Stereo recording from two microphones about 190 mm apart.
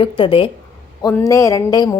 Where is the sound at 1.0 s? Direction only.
15° left (ahead or behind).